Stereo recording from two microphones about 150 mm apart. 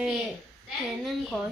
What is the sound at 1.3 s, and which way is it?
Speech, 5° right (ahead or behind).